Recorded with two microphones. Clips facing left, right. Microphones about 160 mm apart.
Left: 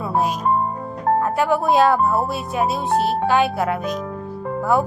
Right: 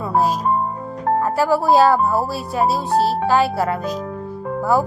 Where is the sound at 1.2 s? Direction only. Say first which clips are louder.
Right 1 dB; 5° right (ahead or behind).